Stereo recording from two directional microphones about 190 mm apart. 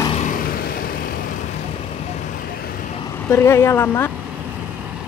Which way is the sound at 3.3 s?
15° left (ahead or behind).